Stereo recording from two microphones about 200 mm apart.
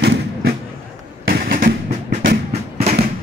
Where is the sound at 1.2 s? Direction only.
50° right (ahead or behind).